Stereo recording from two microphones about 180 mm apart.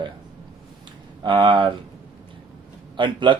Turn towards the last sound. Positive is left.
turn(degrees=-25)  # may be behind; listen again after turning